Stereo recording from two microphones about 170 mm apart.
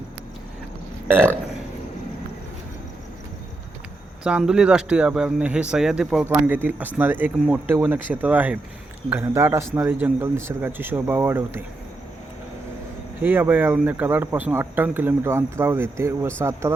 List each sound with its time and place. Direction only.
1.0 s burping: 15° right (ahead or behind)
4.2 s speech: 5° right (ahead or behind)
13.2 s speech: 10° right (ahead or behind)